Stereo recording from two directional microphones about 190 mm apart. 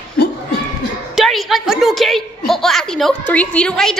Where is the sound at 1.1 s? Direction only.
Centre (ahead or behind).